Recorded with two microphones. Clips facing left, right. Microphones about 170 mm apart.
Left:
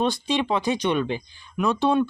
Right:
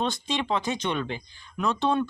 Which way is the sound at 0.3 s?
15° left (ahead or behind).